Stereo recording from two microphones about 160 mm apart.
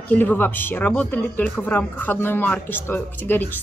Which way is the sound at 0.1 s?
10° left (ahead or behind).